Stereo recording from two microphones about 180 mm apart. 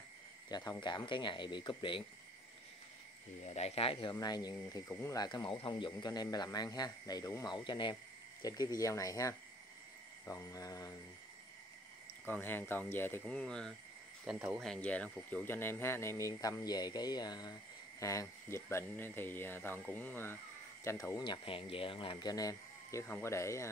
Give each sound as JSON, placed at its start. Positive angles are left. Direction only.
{"t": 0.5, "sound": "speech", "side_deg": 20}
{"t": 3.4, "sound": "speech", "side_deg": 35}
{"t": 12.3, "sound": "speech", "side_deg": 10}